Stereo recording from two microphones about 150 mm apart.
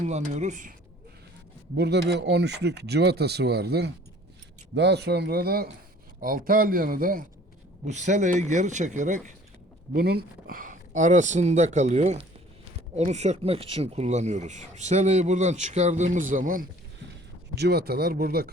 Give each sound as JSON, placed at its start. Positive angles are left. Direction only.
{"t": 0.0, "sound": "speech", "side_deg": -50}
{"t": 1.7, "sound": "speech", "side_deg": -90}
{"t": 4.9, "sound": "speech", "side_deg": -90}
{"t": 6.1, "sound": "a man's voice", "side_deg": -70}
{"t": 7.9, "sound": "speech", "side_deg": -50}
{"t": 9.9, "sound": "speech", "side_deg": -90}
{"t": 17.5, "sound": "speech", "side_deg": -90}